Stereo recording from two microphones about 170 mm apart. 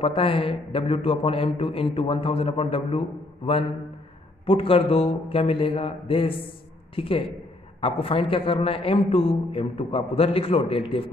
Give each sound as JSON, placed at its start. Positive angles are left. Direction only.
{"t": 0.0, "sound": "a man's voice", "side_deg": 30}
{"t": 4.5, "sound": "a man's voice", "side_deg": 35}